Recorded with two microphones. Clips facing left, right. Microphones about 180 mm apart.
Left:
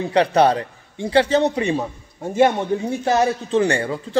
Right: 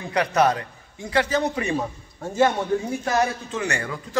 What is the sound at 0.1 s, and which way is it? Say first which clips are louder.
A man's voice: left 4 dB; 30° left (ahead or behind).